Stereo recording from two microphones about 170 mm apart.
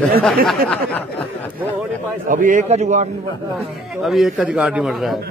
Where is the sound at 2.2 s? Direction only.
50° right (ahead or behind).